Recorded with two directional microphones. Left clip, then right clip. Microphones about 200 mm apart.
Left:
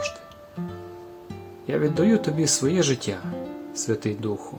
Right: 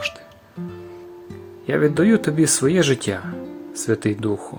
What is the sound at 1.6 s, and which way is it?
Speech, 25° right (ahead or behind).